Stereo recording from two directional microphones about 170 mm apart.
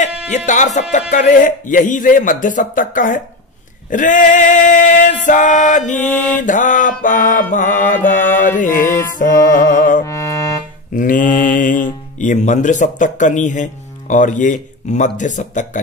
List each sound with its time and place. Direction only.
0.5 s speech: 45° left (ahead or behind)
3.9 s male singing: 50° left (ahead or behind)
6.0 s mantra: 10° left (ahead or behind)
6.3 s speech: 50° left (ahead or behind)
10.0 s music: 15° left (ahead or behind)
11.0 s speech: 50° left (ahead or behind)